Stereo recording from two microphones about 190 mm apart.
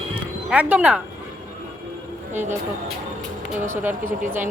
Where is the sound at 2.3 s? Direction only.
40° right (ahead or behind).